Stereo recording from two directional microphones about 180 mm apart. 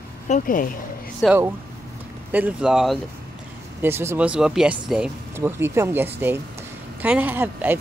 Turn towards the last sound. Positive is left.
turn(degrees=-10)  # may be behind; listen again after turning